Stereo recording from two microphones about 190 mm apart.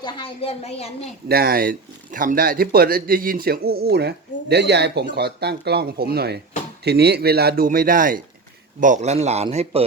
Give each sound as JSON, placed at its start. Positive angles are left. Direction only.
{"t": 0.0, "sound": "speech", "side_deg": 30}
{"t": 1.3, "sound": "a man's voice", "side_deg": -50}